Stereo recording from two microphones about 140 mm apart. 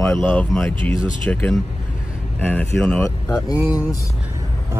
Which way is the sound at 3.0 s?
25° left (ahead or behind).